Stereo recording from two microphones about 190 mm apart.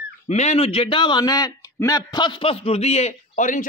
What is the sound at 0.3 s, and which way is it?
A man's voice, 35° left (ahead or behind).